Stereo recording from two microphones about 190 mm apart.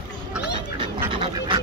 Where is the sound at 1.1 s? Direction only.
25° right (ahead or behind).